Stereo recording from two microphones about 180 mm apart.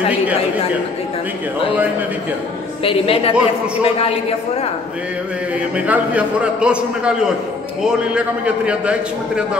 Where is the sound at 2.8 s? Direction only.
30° left (ahead or behind).